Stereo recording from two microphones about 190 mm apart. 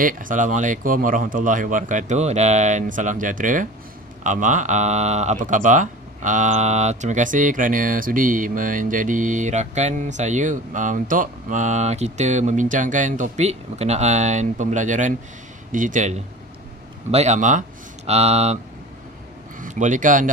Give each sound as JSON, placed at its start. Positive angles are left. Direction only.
{"t": 0.0, "sound": "speech", "side_deg": -45}
{"t": 19.6, "sound": "speech", "side_deg": -40}